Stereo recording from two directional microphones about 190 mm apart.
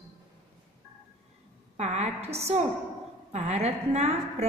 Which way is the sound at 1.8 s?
35° right (ahead or behind).